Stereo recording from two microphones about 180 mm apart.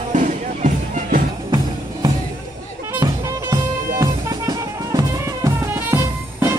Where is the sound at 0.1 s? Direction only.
45° right (ahead or behind).